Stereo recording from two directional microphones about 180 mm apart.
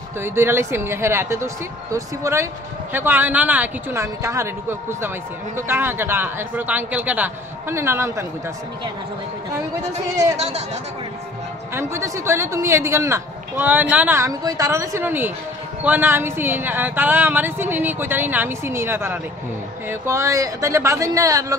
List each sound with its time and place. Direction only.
0.2 s speech: 15° right (ahead or behind)
10.3 s speech: 35° right (ahead or behind)
11.7 s speech: 15° right (ahead or behind)